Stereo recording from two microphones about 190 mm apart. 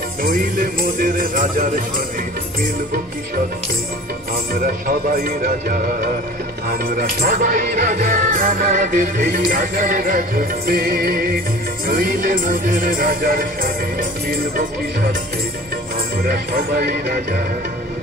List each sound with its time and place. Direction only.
0.2 s music: 45° right (ahead or behind)
4.6 s music: 50° right (ahead or behind)
16.2 s music: 50° right (ahead or behind)